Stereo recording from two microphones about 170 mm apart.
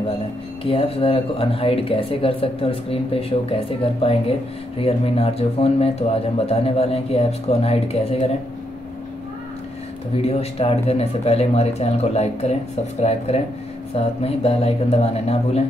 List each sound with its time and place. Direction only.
0.7 s speech: 35° left (ahead or behind)
10.1 s speech: 35° left (ahead or behind)
13.9 s speech: 35° left (ahead or behind)